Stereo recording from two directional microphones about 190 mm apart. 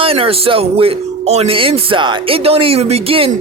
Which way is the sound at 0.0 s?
30° right (ahead or behind).